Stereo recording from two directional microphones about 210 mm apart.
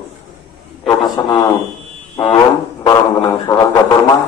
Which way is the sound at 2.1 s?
20° left (ahead or behind).